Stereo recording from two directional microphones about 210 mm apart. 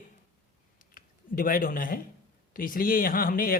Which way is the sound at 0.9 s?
40° left (ahead or behind).